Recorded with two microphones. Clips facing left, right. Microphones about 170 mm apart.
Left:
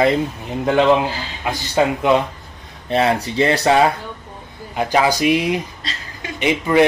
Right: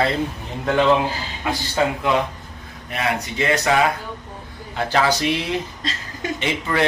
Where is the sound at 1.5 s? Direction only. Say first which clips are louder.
Left 3 dB; 20° left (ahead or behind).